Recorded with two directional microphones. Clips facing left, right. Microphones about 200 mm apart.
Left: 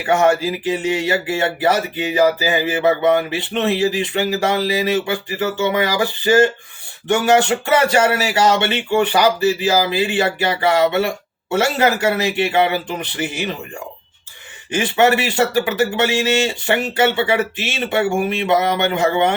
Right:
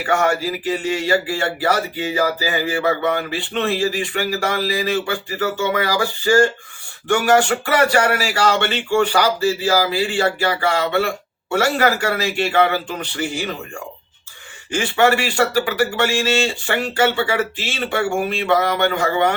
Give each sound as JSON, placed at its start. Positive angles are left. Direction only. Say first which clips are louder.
{"t": 0.0, "sound": "speech", "louder": "left 3 dB", "side_deg": 20}
{"t": 14.7, "sound": "speech", "louder": "left 1 dB", "side_deg": 20}